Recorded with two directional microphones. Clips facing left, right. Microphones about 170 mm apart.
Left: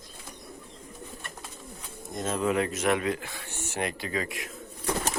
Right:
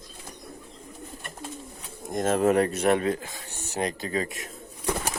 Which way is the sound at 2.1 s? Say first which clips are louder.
Right 6 dB; 50° right (ahead or behind).